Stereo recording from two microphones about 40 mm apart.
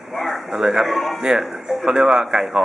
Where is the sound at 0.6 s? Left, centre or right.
Centre.